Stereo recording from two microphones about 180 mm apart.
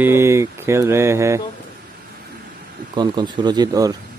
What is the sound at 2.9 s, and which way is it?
Speech, 25° right (ahead or behind).